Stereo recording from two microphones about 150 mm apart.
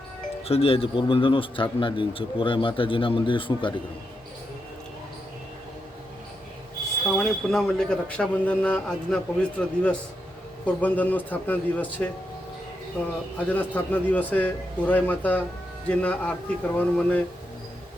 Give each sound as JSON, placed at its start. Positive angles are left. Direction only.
{"t": 0.4, "sound": "a man's voice", "side_deg": 40}
{"t": 7.2, "sound": "a man's voice", "side_deg": 5}
{"t": 13.5, "sound": "speech", "side_deg": 10}